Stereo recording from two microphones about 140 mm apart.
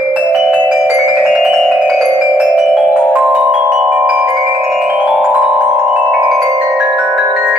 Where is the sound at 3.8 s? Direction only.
5° right (ahead or behind).